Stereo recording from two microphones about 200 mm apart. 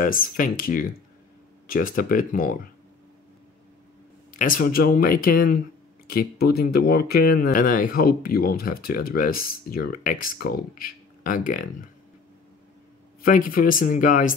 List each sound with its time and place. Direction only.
0.0 s speech: 45° left (ahead or behind)
4.4 s speech: 45° left (ahead or behind)
13.2 s speech: 45° left (ahead or behind)